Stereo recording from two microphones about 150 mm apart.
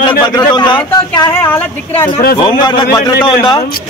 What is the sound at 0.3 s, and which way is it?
A man's voice, 25° left (ahead or behind).